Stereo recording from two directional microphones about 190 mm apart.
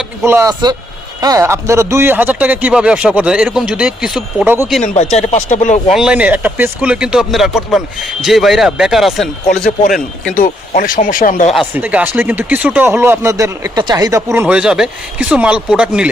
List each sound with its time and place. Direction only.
0.3 s speech: 15° right (ahead or behind)
5.1 s speech: 35° left (ahead or behind)
5.9 s speech: 5° right (ahead or behind)
10.3 s speech: 45° left (ahead or behind)
11.5 s speech: 10° right (ahead or behind)